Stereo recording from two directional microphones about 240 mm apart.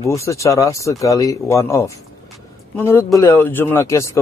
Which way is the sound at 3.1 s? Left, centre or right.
Centre.